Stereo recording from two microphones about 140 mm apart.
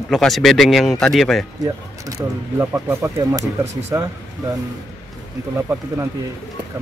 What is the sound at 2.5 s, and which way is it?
Speech, 20° right (ahead or behind).